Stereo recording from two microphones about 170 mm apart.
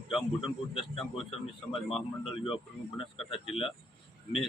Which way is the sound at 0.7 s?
30° left (ahead or behind).